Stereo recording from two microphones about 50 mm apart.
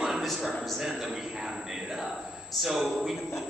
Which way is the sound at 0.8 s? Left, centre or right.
Centre.